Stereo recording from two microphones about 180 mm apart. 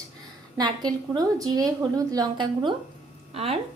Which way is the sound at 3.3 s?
35° right (ahead or behind).